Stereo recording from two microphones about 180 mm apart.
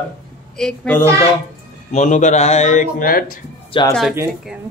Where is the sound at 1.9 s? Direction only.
40° left (ahead or behind).